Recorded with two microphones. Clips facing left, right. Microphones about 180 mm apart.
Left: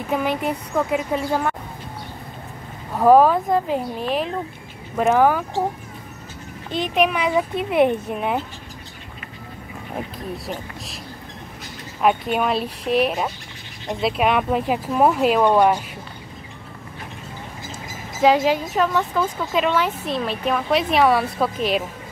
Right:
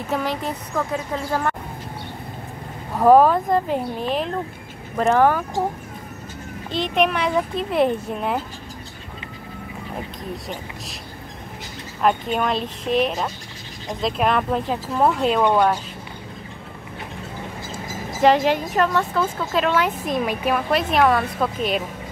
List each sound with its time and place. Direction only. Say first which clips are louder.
0.1 s speech: left 3 dB; 10° left (ahead or behind)
3.0 s a woman's voice: even; 10° left (ahead or behind)
7.0 s a woman's voice: left 1 dB; 5° left (ahead or behind)
12.0 s a woman's voice: left 1 dB; 5° left (ahead or behind)
18.2 s a woman's voice: even; 5° left (ahead or behind)
19.8 s a woman's voice: right 1 dB; 10° right (ahead or behind)